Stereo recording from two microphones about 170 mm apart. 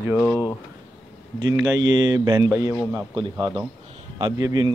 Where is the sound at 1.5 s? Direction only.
20° right (ahead or behind).